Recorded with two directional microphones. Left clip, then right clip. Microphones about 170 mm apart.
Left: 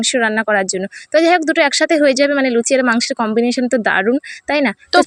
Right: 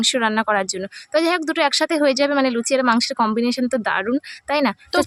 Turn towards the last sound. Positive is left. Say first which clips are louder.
# left 5 dB
turn(degrees=15)  # may be behind; listen again after turning